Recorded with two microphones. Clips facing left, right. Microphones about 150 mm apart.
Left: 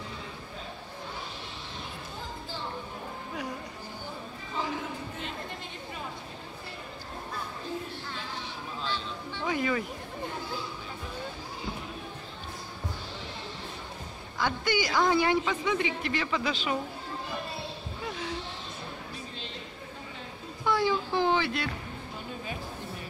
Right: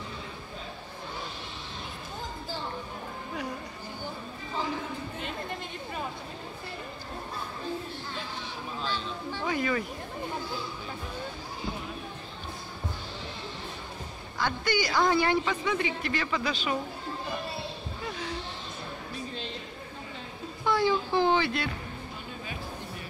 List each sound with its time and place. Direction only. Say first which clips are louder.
9.5 s music: even; 10° left (ahead or behind)
14.4 s speech: even; 15° left (ahead or behind)
20.7 s a sound: right 2 dB; 5° left (ahead or behind)